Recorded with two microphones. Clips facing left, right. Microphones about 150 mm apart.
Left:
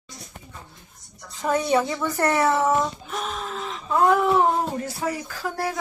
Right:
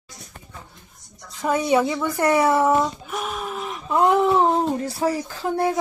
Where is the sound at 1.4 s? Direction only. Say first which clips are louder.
Right 2 dB; 5° right (ahead or behind).